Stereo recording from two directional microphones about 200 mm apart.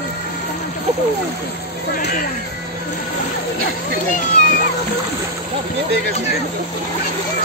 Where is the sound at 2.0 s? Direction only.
55° left (ahead or behind).